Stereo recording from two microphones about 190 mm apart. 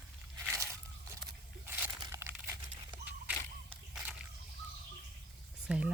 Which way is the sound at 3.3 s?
10° right (ahead or behind).